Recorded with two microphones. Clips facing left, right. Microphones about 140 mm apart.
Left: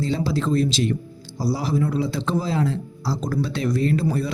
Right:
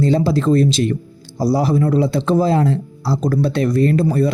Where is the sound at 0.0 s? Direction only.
55° right (ahead or behind).